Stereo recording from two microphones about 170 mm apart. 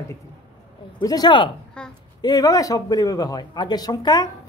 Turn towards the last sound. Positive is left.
turn(degrees=25)  # may be behind; listen again after turning